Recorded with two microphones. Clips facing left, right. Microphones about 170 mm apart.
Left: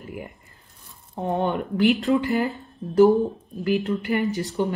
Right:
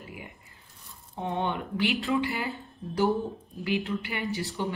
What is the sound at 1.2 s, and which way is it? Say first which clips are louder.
Speech: left 6 dB; 45° left (ahead or behind).